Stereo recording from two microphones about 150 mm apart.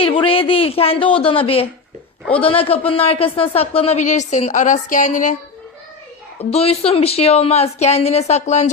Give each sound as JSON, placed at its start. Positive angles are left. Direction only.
{"t": 0.0, "sound": "speech", "side_deg": 35}
{"t": 6.5, "sound": "speech", "side_deg": 40}